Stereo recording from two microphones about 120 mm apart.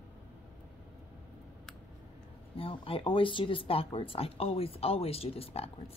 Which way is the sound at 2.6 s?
50° left (ahead or behind).